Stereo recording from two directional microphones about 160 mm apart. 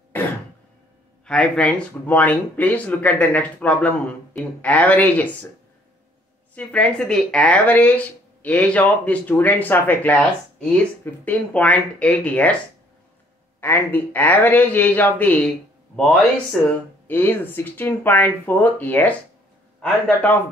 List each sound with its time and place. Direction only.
0.1 s throat clearing: 10° left (ahead or behind)
1.2 s speech: 5° left (ahead or behind)
6.5 s speech: 10° left (ahead or behind)
13.6 s speech: 15° left (ahead or behind)
16.6 s speech: centre (ahead or behind)
17.1 s speech: 10° left (ahead or behind)